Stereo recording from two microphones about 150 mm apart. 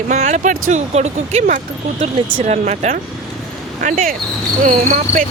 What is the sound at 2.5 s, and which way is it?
Speech, 50° right (ahead or behind).